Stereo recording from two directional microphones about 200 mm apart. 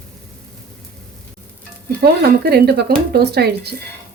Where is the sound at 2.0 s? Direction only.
50° right (ahead or behind).